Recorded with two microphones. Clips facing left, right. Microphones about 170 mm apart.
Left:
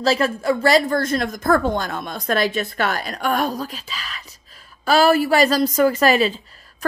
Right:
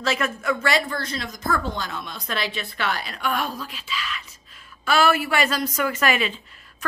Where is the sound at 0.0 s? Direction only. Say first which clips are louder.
Left 6 dB; 35° left (ahead or behind).